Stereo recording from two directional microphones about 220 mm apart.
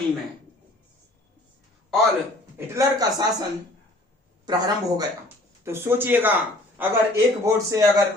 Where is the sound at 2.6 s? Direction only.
15° right (ahead or behind).